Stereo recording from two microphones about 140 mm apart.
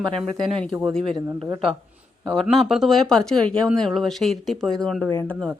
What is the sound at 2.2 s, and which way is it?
Speech, 5° right (ahead or behind).